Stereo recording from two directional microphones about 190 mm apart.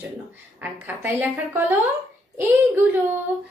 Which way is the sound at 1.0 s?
10° right (ahead or behind).